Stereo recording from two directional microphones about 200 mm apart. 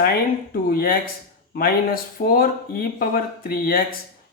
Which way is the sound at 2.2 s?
50° left (ahead or behind).